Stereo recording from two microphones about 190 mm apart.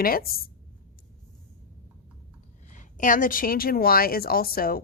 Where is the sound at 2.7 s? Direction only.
40° left (ahead or behind).